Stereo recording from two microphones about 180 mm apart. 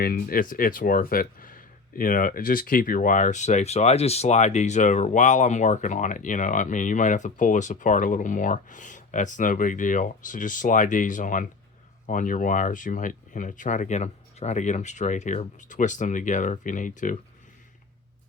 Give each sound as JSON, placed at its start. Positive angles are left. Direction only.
{"t": 0.0, "sound": "speech", "side_deg": 55}